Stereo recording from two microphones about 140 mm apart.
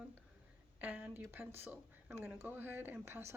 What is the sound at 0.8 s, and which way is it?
Speech, 15° right (ahead or behind).